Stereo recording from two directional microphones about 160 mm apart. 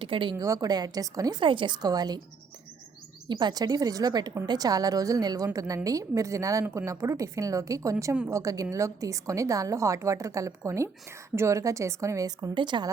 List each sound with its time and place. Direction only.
0.0 s a woman's voice: 30° right (ahead or behind)
3.2 s a woman's voice: 25° right (ahead or behind)